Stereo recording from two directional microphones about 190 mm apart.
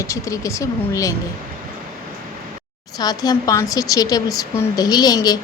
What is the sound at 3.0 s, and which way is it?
A woman's voice, 20° left (ahead or behind).